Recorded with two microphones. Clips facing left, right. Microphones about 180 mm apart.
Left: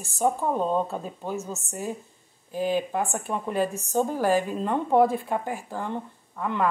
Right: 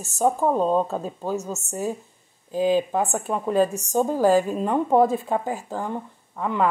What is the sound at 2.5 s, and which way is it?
A woman's voice, 15° right (ahead or behind).